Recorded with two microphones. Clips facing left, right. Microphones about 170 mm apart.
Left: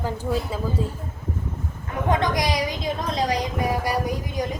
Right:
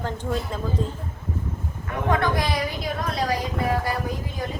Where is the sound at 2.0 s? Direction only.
20° left (ahead or behind).